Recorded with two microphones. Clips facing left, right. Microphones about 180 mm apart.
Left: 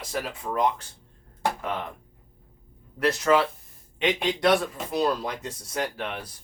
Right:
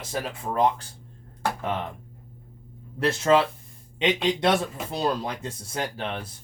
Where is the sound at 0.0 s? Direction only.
25° right (ahead or behind).